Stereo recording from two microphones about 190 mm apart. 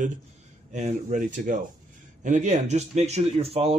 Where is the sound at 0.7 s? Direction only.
40° right (ahead or behind).